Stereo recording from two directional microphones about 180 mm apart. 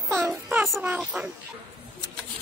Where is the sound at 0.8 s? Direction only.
5° right (ahead or behind).